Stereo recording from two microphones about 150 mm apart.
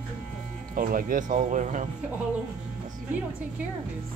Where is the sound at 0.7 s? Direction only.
65° right (ahead or behind).